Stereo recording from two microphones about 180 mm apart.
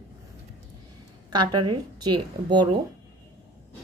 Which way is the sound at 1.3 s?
25° right (ahead or behind).